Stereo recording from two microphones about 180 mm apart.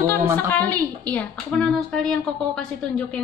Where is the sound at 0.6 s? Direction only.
10° left (ahead or behind).